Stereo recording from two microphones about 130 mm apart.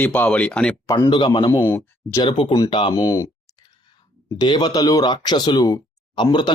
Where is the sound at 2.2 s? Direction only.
40° left (ahead or behind).